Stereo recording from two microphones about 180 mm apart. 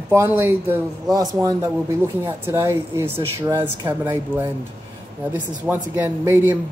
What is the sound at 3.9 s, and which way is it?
Speech, 10° right (ahead or behind).